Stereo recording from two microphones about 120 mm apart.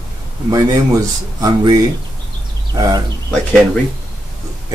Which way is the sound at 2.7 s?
35° right (ahead or behind).